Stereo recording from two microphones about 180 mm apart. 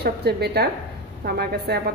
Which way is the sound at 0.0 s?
65° right (ahead or behind).